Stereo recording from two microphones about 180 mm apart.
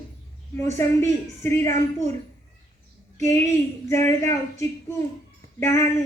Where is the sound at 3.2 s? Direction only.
15° left (ahead or behind).